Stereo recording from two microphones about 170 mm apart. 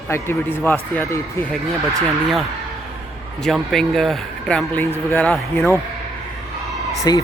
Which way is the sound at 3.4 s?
Centre (ahead or behind).